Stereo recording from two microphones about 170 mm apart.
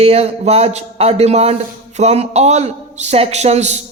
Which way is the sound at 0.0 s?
35° right (ahead or behind).